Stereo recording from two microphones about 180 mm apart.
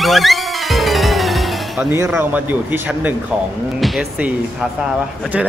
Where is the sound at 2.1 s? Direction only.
10° right (ahead or behind).